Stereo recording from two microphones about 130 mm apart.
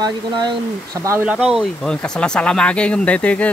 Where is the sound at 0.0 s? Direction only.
35° right (ahead or behind).